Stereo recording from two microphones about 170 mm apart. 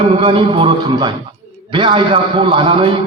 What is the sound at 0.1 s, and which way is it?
A man's voice, 30° right (ahead or behind).